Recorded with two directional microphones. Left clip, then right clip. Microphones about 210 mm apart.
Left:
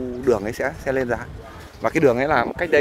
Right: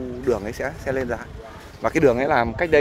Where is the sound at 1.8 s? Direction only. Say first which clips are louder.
Even; centre (ahead or behind).